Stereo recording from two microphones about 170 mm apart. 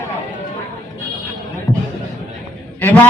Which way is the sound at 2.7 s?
10° left (ahead or behind).